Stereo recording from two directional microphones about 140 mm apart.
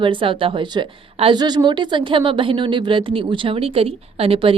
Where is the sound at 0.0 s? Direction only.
40° right (ahead or behind).